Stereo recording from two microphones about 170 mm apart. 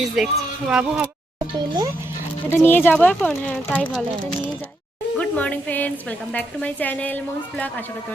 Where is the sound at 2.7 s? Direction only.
10° left (ahead or behind).